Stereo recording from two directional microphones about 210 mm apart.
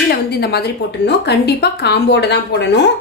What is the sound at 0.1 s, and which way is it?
Speech, 50° left (ahead or behind).